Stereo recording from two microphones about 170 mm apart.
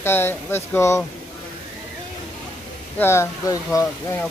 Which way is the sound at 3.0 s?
15° left (ahead or behind).